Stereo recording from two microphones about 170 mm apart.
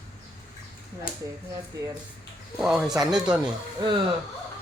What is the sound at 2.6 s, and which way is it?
Speech, 5° right (ahead or behind).